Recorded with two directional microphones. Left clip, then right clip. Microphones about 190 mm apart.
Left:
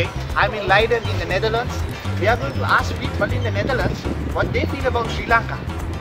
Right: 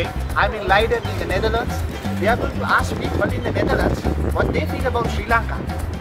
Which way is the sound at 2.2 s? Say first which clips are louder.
Even; 5° right (ahead or behind).